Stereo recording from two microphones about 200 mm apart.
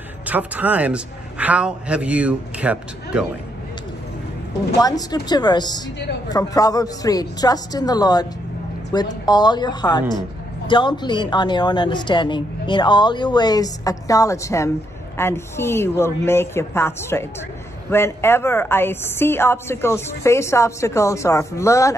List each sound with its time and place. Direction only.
0.3 s a man's voice: 10° right (ahead or behind)
4.7 s a woman's voice: 20° left (ahead or behind)